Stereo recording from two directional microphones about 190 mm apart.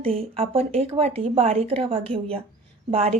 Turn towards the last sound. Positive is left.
turn(degrees=-30)  # may be behind; listen again after turning